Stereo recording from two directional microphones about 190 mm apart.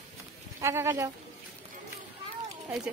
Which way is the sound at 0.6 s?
15° right (ahead or behind).